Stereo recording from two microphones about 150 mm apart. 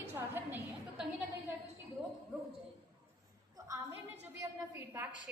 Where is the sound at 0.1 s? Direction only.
15° right (ahead or behind).